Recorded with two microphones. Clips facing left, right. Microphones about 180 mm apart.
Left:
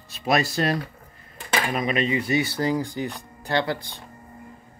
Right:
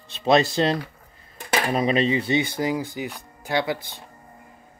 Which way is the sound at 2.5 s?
10° right (ahead or behind).